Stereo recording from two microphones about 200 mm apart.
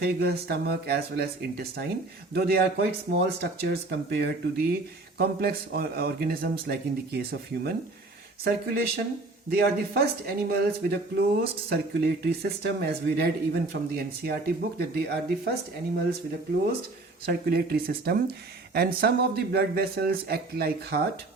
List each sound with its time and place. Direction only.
0.0 s speech: 50° right (ahead or behind)
17.2 s speech: 50° right (ahead or behind)